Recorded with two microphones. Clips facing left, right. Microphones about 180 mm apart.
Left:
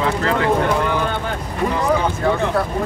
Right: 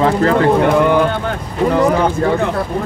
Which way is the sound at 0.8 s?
55° right (ahead or behind).